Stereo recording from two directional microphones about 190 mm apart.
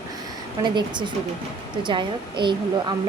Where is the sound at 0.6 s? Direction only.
25° right (ahead or behind).